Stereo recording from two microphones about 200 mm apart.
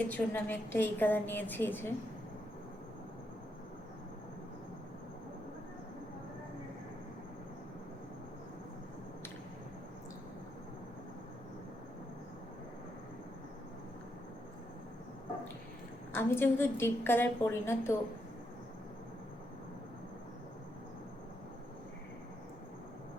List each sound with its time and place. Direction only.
0.1 s a woman's voice: 10° left (ahead or behind)
16.1 s a woman's voice: 10° left (ahead or behind)